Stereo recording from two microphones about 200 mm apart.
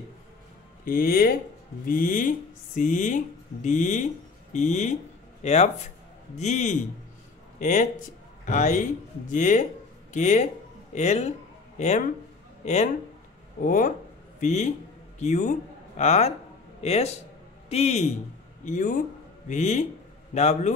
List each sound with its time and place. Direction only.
0.8 s a man's voice: 45° left (ahead or behind)